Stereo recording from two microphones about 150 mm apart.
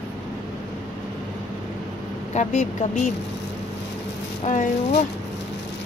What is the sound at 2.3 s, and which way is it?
Speech, 50° left (ahead or behind).